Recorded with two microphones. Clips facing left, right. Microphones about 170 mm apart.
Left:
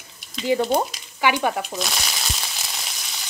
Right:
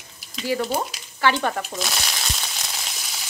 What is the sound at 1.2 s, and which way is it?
Speech, 10° left (ahead or behind).